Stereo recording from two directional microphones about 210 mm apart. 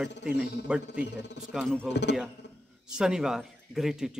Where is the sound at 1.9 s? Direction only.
55° left (ahead or behind).